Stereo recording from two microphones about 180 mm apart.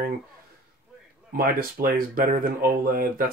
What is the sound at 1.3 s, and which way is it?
Speech, 55° right (ahead or behind).